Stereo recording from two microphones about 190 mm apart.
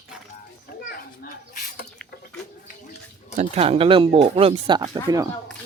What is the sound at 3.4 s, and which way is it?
Speech, 30° right (ahead or behind).